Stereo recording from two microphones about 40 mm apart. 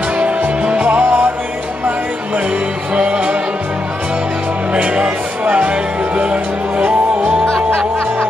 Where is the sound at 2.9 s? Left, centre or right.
Right.